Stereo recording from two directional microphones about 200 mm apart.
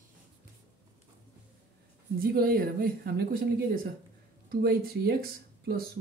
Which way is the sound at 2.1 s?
45° right (ahead or behind).